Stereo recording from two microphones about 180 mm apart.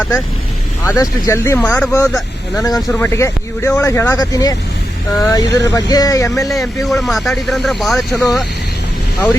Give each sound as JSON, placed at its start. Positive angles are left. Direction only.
{"t": 0.9, "sound": "speech", "side_deg": 15}
{"t": 2.6, "sound": "speech", "side_deg": 15}
{"t": 6.8, "sound": "speech", "side_deg": 0}